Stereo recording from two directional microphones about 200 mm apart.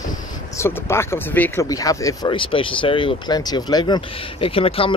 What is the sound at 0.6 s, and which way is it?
Speech, 10° left (ahead or behind).